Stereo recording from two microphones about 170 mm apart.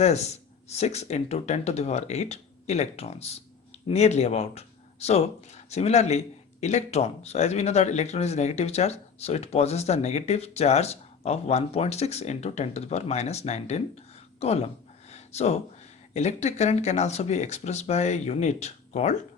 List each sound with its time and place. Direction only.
0.0 s speech: 40° left (ahead or behind)
15.1 s a sound: 40° left (ahead or behind)
16.1 s speech: 40° left (ahead or behind)